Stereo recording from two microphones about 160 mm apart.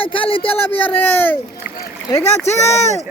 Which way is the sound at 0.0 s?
35° left (ahead or behind).